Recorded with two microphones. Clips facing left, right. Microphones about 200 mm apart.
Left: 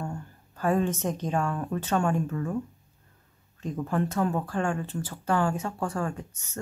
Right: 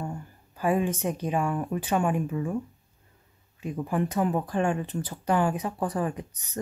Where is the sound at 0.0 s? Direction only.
15° right (ahead or behind).